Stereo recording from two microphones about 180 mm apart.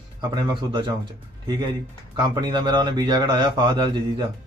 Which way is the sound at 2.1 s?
25° right (ahead or behind).